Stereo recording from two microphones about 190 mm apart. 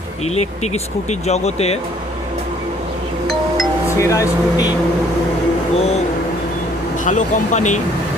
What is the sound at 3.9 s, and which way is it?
Speech, 15° left (ahead or behind).